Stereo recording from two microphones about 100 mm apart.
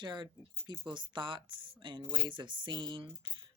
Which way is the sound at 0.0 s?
50° right (ahead or behind).